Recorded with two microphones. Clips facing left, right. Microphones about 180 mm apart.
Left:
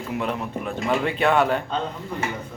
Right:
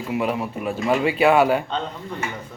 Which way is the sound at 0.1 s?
10° right (ahead or behind).